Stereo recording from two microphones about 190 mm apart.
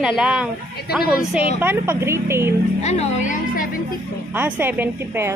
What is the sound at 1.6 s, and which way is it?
Speech, 10° right (ahead or behind).